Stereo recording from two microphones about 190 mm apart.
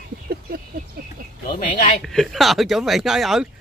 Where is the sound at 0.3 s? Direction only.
50° right (ahead or behind).